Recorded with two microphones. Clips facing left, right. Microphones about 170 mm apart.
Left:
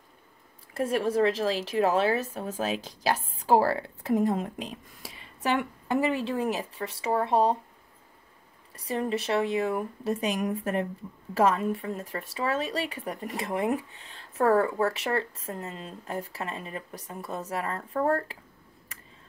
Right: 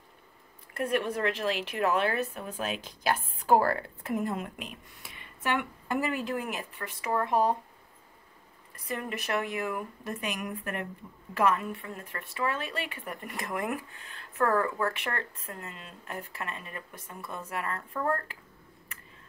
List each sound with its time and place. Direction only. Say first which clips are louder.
0.9 s a woman's voice: left 5 dB; 35° left (ahead or behind)
5.9 s speech: left 4 dB; 25° left (ahead or behind)
8.9 s speech: left 5 dB; 30° left (ahead or behind)